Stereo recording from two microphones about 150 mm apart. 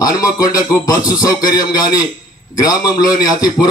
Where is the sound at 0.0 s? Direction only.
25° left (ahead or behind).